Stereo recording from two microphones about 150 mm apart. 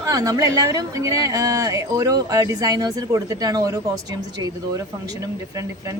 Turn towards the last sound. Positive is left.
turn(degrees=-25)  # may be behind; listen again after turning